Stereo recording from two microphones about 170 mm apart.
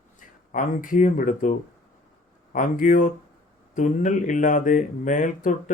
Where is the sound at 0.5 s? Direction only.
50° left (ahead or behind).